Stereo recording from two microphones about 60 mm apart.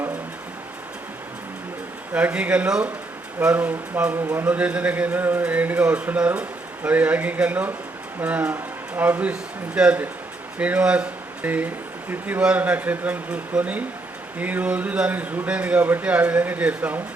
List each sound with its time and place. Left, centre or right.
2.1 s speech: centre